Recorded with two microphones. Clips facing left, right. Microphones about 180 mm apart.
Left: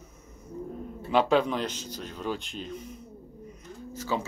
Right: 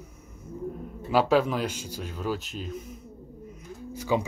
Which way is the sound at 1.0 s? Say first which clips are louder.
Right 1 dB; 5° right (ahead or behind).